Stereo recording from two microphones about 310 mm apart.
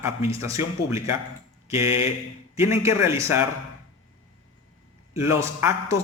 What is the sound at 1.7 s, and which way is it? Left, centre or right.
Speech, centre.